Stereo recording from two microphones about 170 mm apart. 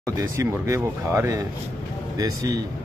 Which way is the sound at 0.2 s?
20° right (ahead or behind).